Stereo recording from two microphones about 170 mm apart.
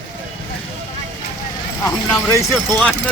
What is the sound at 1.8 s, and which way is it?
Speech, 20° left (ahead or behind).